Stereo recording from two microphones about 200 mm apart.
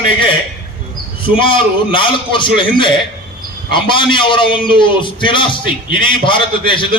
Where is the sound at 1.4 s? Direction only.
25° left (ahead or behind).